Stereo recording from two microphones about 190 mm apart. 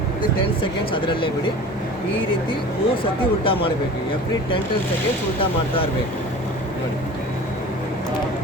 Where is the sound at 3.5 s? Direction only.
30° left (ahead or behind).